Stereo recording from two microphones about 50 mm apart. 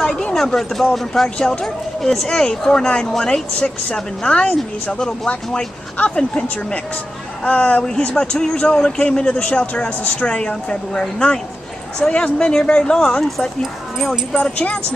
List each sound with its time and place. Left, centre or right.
0.0 s a sound: centre
0.9 s speech: centre
7.4 s speech: left
14.3 s speech: left